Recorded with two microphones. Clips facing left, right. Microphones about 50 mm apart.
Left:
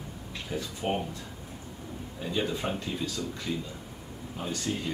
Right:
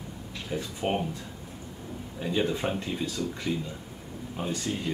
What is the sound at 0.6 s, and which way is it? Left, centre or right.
Speech, centre.